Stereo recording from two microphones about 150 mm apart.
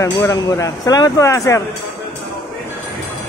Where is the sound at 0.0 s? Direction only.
20° left (ahead or behind).